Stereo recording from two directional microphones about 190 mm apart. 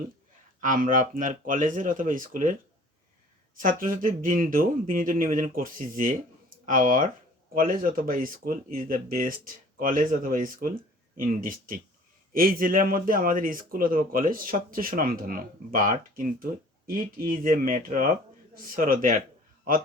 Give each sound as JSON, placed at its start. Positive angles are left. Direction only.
{"t": 0.6, "sound": "speech", "side_deg": -45}
{"t": 3.6, "sound": "speech", "side_deg": -45}